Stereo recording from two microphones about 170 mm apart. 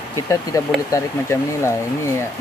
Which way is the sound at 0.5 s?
20° left (ahead or behind).